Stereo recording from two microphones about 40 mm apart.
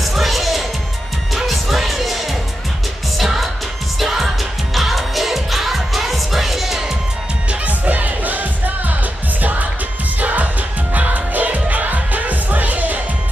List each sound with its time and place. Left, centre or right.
0.0 s music: centre
4.0 s music: centre
7.6 s music: right